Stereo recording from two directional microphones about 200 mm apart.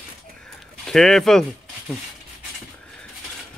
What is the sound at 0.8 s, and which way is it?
Speech, centre (ahead or behind).